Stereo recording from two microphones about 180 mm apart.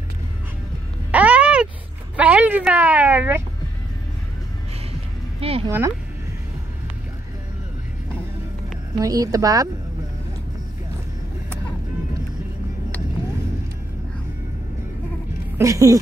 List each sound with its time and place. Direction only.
1.1 s a sound: 5° right (ahead or behind)
2.1 s a woman's voice: 10° right (ahead or behind)
5.4 s speech: 35° right (ahead or behind)
5.7 s speech: 15° right (ahead or behind)
9.0 s speech: 20° right (ahead or behind)
15.5 s speech: 15° right (ahead or behind)